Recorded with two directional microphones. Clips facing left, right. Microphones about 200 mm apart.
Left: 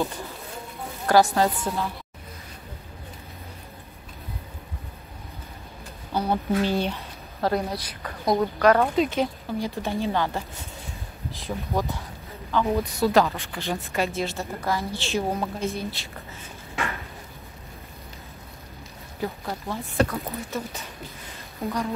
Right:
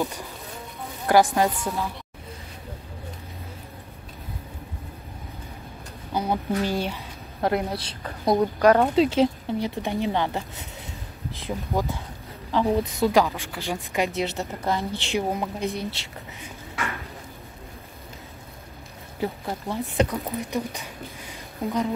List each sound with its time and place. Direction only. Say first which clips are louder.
1.0 s speech: even; 15° right (ahead or behind)
6.1 s speech: left 1 dB; 10° right (ahead or behind)
7.4 s speech: right 1 dB; 25° right (ahead or behind)
8.4 s speech: right 1 dB; 15° right (ahead or behind)
8.9 s speech: right 4 dB; 30° right (ahead or behind)
11.4 s speech: right 1 dB; 15° right (ahead or behind)
12.4 s speech: right 1 dB; 30° right (ahead or behind)
12.9 s speech: even; 15° right (ahead or behind)
19.1 s speech: right 2 dB; 25° right (ahead or behind)